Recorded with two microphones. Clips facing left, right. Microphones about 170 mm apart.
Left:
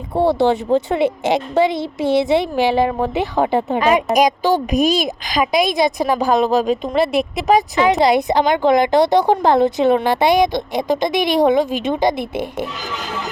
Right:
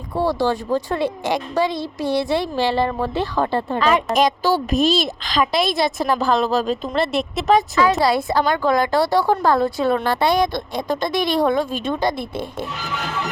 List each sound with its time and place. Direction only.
0.1 s speech: 25° left (ahead or behind)
6.9 s speech: centre (ahead or behind)
7.8 s a woman's voice: 20° left (ahead or behind)